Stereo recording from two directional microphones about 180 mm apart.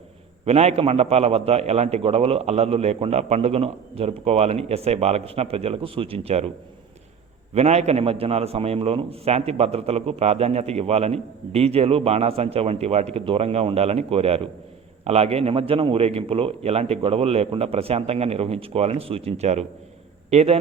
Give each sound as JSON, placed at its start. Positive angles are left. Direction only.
{"t": 0.4, "sound": "a man's voice", "side_deg": -35}
{"t": 7.5, "sound": "a man's voice", "side_deg": -35}